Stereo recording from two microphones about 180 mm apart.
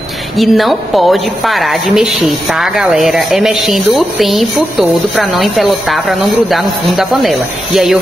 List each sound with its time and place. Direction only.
0.4 s speech: centre (ahead or behind)